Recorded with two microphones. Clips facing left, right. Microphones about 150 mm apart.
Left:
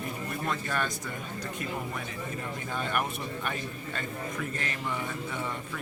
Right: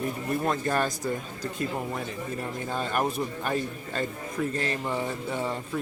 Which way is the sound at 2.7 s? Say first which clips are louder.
Right 4 dB; 35° right (ahead or behind).